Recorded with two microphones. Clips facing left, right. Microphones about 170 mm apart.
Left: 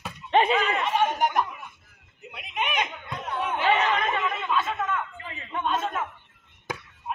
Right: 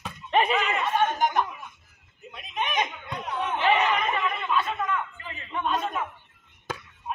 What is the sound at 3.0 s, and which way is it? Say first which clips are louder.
Laughter: even; centre (ahead or behind).